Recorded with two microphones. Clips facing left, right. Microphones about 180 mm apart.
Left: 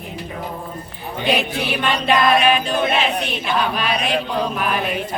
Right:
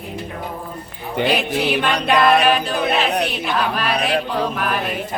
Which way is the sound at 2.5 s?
Centre (ahead or behind).